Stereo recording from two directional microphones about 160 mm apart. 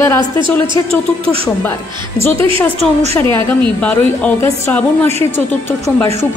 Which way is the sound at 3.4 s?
10° left (ahead or behind).